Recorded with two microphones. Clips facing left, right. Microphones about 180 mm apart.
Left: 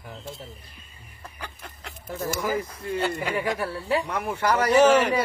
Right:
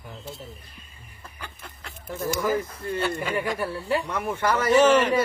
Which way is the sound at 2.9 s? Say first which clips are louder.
Even; 15° left (ahead or behind).